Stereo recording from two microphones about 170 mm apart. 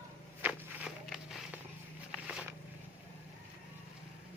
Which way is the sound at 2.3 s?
5° right (ahead or behind).